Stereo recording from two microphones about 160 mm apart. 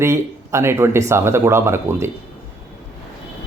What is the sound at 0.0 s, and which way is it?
Speech, 15° right (ahead or behind).